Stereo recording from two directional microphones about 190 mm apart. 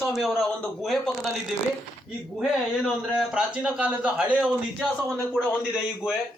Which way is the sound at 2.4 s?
Centre (ahead or behind).